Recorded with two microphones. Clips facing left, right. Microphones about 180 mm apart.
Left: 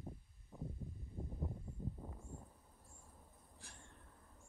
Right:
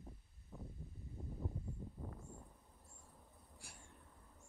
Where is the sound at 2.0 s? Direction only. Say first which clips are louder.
Right 2 dB; 10° left (ahead or behind).